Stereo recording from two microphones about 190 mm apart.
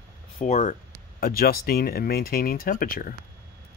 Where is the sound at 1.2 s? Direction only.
50° left (ahead or behind).